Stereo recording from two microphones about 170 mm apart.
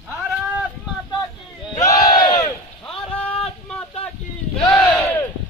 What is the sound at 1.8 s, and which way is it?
Battle cry, 20° left (ahead or behind).